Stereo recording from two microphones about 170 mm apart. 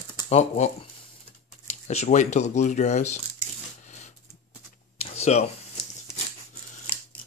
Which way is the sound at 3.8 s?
45° left (ahead or behind).